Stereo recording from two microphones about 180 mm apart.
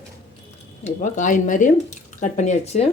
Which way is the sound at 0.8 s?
45° left (ahead or behind).